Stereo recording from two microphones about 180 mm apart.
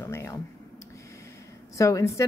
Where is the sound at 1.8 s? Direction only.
15° left (ahead or behind).